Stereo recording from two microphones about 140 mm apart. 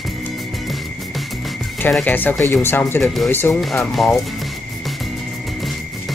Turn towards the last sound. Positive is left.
turn(degrees=0)  # may be behind; listen again after turning